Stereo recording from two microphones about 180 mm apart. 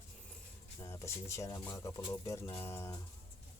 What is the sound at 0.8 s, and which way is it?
Speech, 15° left (ahead or behind).